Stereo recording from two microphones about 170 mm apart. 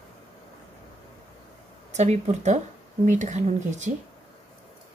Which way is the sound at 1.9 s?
40° right (ahead or behind).